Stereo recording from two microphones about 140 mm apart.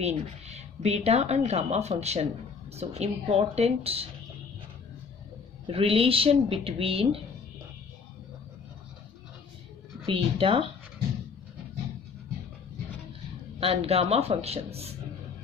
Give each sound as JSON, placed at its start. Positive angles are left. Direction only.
{"t": 0.0, "sound": "speech", "side_deg": -50}
{"t": 5.7, "sound": "speech", "side_deg": -40}
{"t": 10.0, "sound": "speech", "side_deg": -40}
{"t": 13.6, "sound": "speech", "side_deg": -45}